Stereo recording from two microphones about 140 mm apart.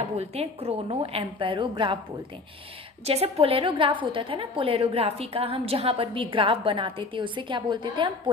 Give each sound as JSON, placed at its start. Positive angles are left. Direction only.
{"t": 0.2, "sound": "a woman's voice", "side_deg": -45}
{"t": 3.1, "sound": "a woman's voice", "side_deg": -45}